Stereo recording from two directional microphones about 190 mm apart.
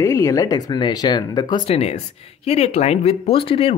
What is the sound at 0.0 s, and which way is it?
Speech, 15° left (ahead or behind).